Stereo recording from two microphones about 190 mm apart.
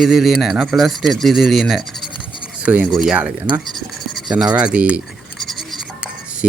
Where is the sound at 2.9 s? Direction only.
5° right (ahead or behind).